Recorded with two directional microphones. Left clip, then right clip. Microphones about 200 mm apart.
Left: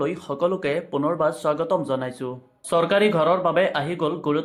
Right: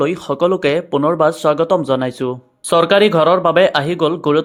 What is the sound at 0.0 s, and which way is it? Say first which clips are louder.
Speech: right 8 dB; 40° right (ahead or behind).